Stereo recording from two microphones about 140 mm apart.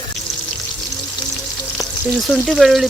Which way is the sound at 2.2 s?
Centre (ahead or behind).